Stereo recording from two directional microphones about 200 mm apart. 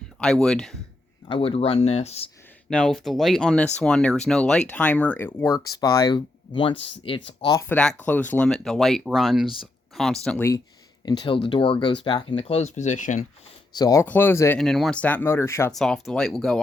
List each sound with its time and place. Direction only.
0.2 s speech: 5° left (ahead or behind)
1.3 s speech: 30° left (ahead or behind)
2.6 s speech: 5° left (ahead or behind)
11.2 s speech: 25° left (ahead or behind)
13.7 s speech: 15° left (ahead or behind)
15.7 s speech: centre (ahead or behind)